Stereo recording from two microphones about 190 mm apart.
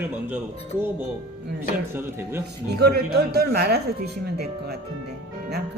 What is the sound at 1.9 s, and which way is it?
Speech, 10° right (ahead or behind).